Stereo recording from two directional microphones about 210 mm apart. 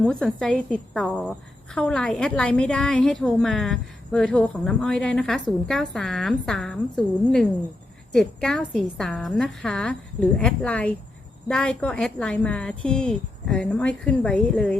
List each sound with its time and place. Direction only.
0.0 s a woman's voice: 5° left (ahead or behind)